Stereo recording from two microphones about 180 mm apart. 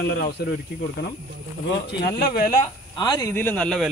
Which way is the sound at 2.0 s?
55° left (ahead or behind).